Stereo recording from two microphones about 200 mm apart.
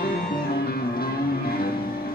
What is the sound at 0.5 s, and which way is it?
Music, 50° left (ahead or behind).